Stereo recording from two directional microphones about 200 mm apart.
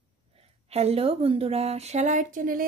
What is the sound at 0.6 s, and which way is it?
Speech, 30° right (ahead or behind).